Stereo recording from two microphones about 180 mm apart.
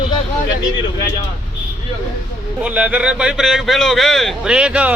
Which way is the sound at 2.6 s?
10° right (ahead or behind).